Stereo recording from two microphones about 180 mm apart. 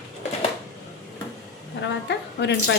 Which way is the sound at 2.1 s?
75° left (ahead or behind).